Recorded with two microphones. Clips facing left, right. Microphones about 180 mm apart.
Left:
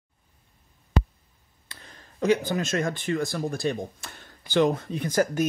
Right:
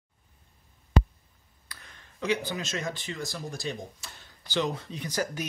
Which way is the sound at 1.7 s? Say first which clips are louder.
Left 3 dB; 30° left (ahead or behind).